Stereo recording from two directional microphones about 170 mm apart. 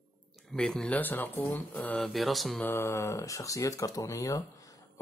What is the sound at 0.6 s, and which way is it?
Speech, 5° left (ahead or behind).